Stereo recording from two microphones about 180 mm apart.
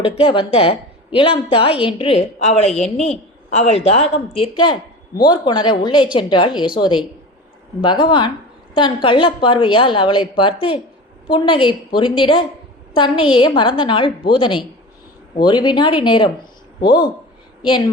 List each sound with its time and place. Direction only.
0.0 s a woman's voice: 30° left (ahead or behind)